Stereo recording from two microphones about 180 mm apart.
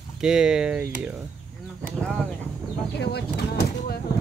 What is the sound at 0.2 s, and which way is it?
Speech, 5° right (ahead or behind).